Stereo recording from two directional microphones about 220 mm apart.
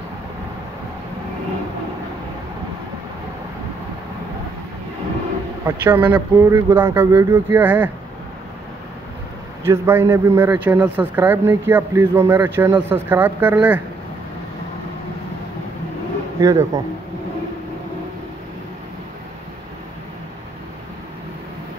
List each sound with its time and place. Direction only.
5.7 s a man's voice: 10° right (ahead or behind)
9.7 s a man's voice: 10° right (ahead or behind)
16.3 s a man's voice: 15° right (ahead or behind)